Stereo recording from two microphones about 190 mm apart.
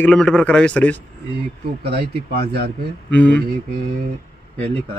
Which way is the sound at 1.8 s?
55° right (ahead or behind).